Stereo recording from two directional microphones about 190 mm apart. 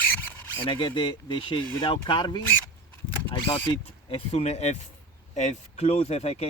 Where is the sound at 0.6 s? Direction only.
25° left (ahead or behind).